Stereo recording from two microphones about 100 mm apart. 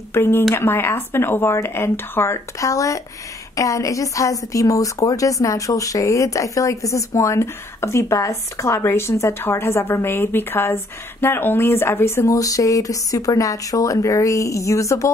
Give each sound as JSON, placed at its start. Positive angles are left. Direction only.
{"t": 0.1, "sound": "a woman's voice", "side_deg": 25}